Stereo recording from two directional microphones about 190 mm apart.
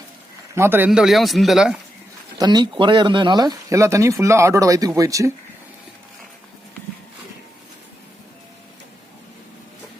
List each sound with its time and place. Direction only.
0.5 s speech: 10° right (ahead or behind)
2.4 s speech: 20° right (ahead or behind)